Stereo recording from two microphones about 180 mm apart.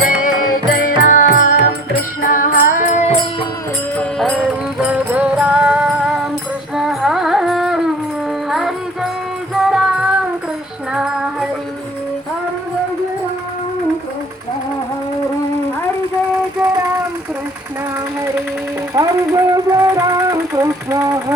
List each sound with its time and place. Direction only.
0.0 s music: 50° left (ahead or behind)
3.9 s music: 5° left (ahead or behind)
4.8 s music: 5° right (ahead or behind)
10.9 s child singing: 5° right (ahead or behind)
18.9 s a sound: 20° right (ahead or behind)